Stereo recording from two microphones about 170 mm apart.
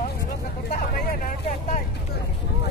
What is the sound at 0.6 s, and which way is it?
Vehicle, 60° left (ahead or behind).